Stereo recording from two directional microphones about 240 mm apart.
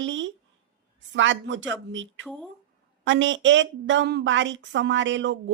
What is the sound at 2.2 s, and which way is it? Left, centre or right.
Speech, centre.